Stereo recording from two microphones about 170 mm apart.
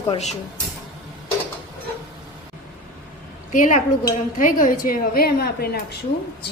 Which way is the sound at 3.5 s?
50° left (ahead or behind).